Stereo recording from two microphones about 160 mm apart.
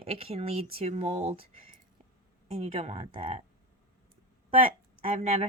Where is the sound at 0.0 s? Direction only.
40° right (ahead or behind).